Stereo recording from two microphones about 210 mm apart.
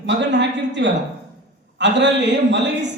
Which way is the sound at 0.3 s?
55° right (ahead or behind).